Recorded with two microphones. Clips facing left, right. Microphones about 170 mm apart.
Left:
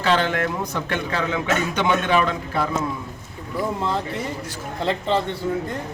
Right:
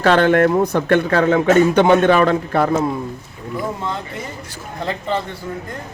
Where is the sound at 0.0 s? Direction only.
55° right (ahead or behind).